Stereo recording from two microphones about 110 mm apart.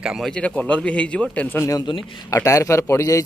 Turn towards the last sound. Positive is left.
turn(degrees=25)  # may be behind; listen again after turning